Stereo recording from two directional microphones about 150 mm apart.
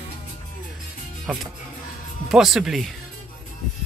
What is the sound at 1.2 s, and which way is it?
Speech, centre (ahead or behind).